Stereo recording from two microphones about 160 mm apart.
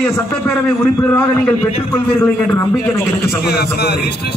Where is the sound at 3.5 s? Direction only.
90° left.